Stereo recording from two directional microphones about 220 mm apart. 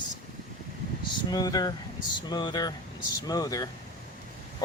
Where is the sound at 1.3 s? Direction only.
15° left (ahead or behind).